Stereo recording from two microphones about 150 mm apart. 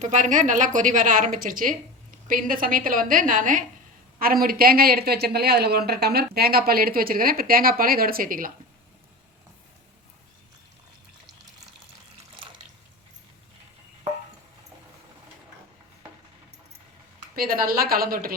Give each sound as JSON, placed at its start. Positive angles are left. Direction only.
{"t": 0.0, "sound": "a woman's voice", "side_deg": -55}
{"t": 4.2, "sound": "speech", "side_deg": -75}
{"t": 17.3, "sound": "a woman's voice", "side_deg": -75}